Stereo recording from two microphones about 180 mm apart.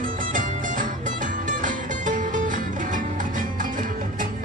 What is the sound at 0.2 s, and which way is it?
Music, 50° right (ahead or behind).